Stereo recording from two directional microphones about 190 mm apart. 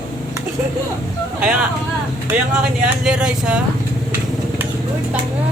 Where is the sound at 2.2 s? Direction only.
5° right (ahead or behind).